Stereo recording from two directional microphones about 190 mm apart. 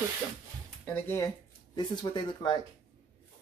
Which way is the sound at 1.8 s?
25° left (ahead or behind).